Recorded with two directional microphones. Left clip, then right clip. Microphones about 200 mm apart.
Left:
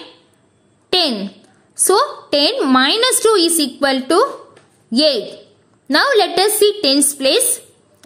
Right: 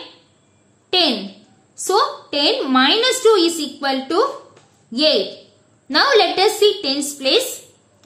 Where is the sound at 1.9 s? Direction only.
50° left (ahead or behind).